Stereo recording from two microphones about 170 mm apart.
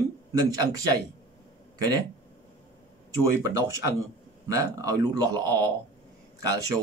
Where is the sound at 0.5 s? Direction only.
20° right (ahead or behind).